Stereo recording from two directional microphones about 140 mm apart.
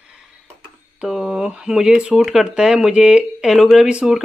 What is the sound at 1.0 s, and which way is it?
Speech, 5° right (ahead or behind).